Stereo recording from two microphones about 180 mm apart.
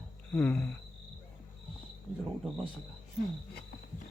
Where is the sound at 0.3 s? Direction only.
10° left (ahead or behind).